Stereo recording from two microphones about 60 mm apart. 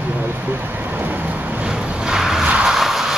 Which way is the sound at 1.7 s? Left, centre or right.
Centre.